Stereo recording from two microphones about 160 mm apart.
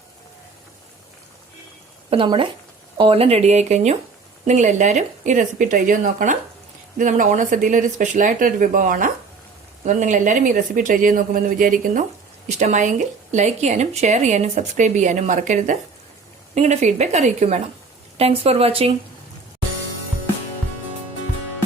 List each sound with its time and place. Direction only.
2.0 s speech: 30° right (ahead or behind)